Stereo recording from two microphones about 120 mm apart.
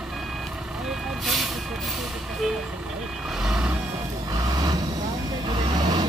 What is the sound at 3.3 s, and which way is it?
Reversing beeps, 5° right (ahead or behind).